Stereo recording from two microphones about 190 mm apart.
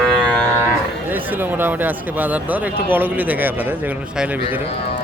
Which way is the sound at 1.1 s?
10° right (ahead or behind).